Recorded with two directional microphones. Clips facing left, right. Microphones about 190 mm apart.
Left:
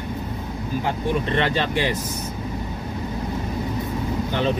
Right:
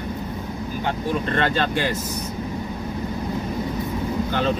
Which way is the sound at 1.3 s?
15° left (ahead or behind).